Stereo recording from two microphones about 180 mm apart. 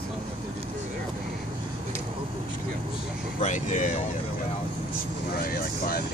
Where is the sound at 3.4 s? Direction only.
45° left (ahead or behind).